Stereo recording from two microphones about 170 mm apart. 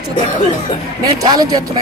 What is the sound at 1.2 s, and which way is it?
Speech, 20° right (ahead or behind).